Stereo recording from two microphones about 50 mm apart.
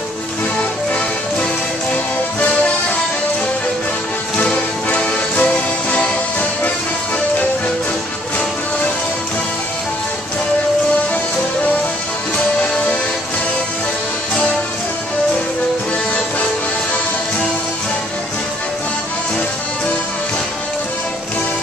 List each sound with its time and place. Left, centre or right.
4.4 s music: left
14.3 s music: centre